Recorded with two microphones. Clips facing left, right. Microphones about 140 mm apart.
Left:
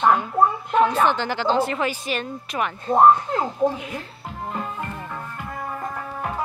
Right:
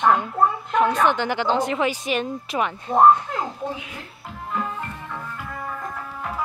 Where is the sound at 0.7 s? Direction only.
30° left (ahead or behind).